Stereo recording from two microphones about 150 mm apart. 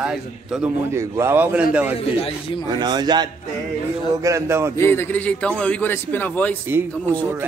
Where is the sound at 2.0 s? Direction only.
40° left (ahead or behind).